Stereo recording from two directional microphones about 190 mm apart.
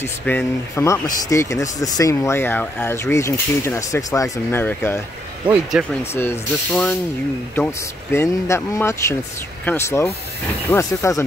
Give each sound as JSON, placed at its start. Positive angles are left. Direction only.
{"t": 0.0, "sound": "speech", "side_deg": 10}
{"t": 5.7, "sound": "speech", "side_deg": -5}
{"t": 6.1, "sound": "speech", "side_deg": 10}